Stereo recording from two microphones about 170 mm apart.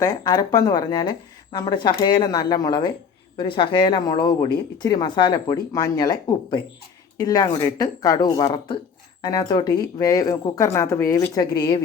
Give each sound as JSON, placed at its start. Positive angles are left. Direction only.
{"t": 0.0, "sound": "speech", "side_deg": 20}